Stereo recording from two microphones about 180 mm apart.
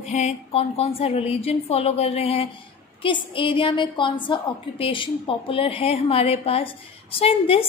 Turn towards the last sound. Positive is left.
turn(degrees=30)  # may be behind; listen again after turning